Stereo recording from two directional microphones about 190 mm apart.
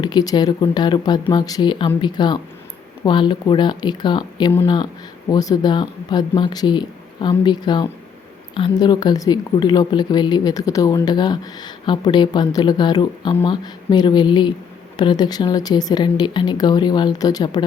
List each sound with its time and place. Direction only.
0.0 s speech: 20° left (ahead or behind)